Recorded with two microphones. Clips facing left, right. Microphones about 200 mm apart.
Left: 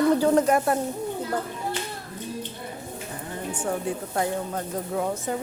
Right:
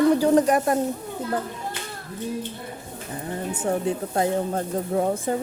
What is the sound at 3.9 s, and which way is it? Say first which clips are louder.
Speech: right 3 dB; 25° right (ahead or behind).